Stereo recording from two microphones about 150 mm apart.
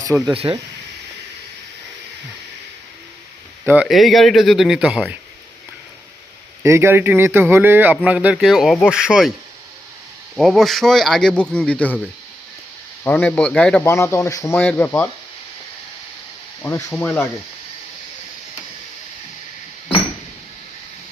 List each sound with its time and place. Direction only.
0.3 s speech: 40° right (ahead or behind)
3.7 s speech: 5° right (ahead or behind)
6.6 s a man's voice: 15° right (ahead or behind)
10.3 s speech: centre (ahead or behind)
13.1 s speech: 10° left (ahead or behind)
13.8 s speech: 15° left (ahead or behind)
16.6 s speech: 15° left (ahead or behind)